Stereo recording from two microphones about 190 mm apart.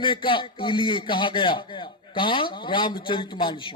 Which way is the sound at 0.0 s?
25° left (ahead or behind).